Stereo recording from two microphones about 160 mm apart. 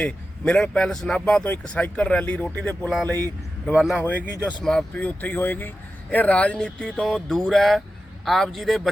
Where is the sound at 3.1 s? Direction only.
20° right (ahead or behind).